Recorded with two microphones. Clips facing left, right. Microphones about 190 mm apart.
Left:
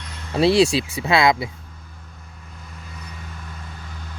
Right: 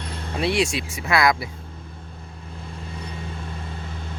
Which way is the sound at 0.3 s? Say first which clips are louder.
Left 7 dB; 35° left (ahead or behind).